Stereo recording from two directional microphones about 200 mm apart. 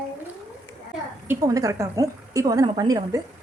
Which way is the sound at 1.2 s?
15° right (ahead or behind).